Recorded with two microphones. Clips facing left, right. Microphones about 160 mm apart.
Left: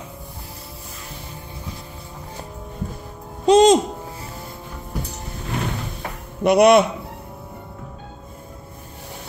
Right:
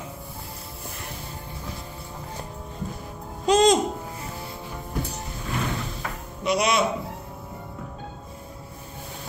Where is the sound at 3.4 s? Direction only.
30° left (ahead or behind).